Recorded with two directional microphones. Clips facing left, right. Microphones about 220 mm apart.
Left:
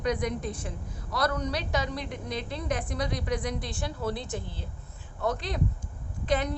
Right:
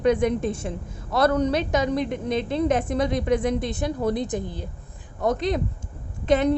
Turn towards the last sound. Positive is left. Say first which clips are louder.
# right 8 dB
turn(degrees=-25)  # may be behind; listen again after turning